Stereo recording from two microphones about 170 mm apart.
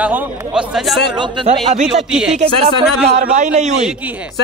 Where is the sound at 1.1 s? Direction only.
25° right (ahead or behind).